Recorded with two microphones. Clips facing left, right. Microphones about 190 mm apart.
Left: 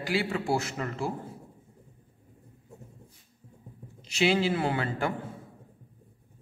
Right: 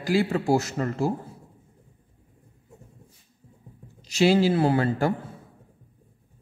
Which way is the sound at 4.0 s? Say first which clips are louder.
Right 5 dB; 40° right (ahead or behind).